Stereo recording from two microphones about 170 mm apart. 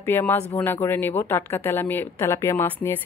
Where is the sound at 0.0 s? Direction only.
15° left (ahead or behind).